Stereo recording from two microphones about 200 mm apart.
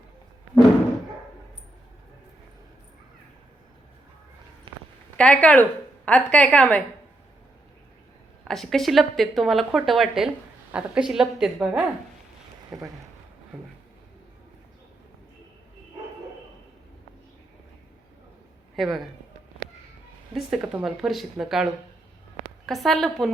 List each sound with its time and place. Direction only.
4.7 s a sound: 25° right (ahead or behind)
5.1 s a woman's voice: 5° left (ahead or behind)
8.4 s speech: centre (ahead or behind)
18.8 s speech: centre (ahead or behind)
20.3 s speech: centre (ahead or behind)